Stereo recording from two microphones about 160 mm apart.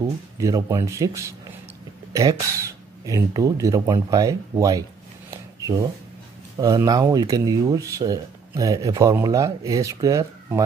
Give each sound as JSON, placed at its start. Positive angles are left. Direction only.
{"t": 0.0, "sound": "speech", "side_deg": -20}
{"t": 5.3, "sound": "a sound", "side_deg": -20}
{"t": 6.6, "sound": "speech", "side_deg": -25}